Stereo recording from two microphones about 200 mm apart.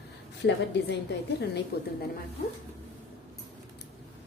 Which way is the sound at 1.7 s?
55° left (ahead or behind).